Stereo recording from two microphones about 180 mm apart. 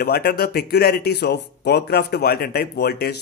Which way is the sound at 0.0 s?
60° left (ahead or behind).